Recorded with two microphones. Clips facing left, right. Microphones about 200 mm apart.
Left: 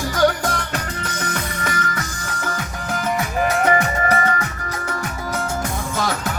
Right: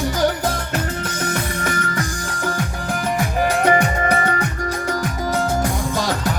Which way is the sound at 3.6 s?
30° right (ahead or behind).